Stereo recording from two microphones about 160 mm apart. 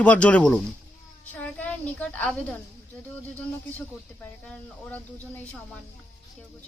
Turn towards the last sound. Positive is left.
turn(degrees=10)  # may be behind; listen again after turning